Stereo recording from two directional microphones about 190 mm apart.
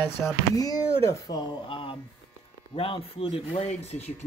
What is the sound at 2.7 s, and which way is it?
Speech, 30° left (ahead or behind).